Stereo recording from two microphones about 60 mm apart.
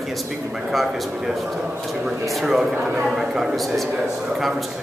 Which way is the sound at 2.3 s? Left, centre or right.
Centre.